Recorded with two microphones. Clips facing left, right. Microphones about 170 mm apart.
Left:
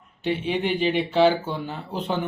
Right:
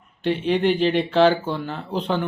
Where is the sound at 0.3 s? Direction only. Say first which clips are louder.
Right 4 dB; 10° left (ahead or behind).